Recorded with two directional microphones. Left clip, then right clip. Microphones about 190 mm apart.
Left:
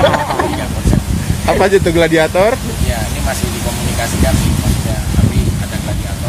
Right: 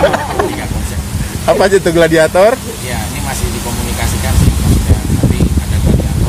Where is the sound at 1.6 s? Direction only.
15° right (ahead or behind).